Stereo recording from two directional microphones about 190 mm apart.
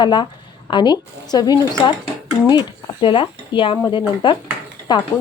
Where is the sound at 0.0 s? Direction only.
25° left (ahead or behind).